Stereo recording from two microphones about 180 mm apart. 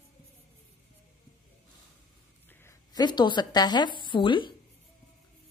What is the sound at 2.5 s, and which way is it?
A woman's voice, 15° left (ahead or behind).